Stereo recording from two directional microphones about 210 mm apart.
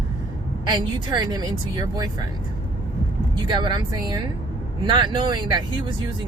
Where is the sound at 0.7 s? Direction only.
20° right (ahead or behind).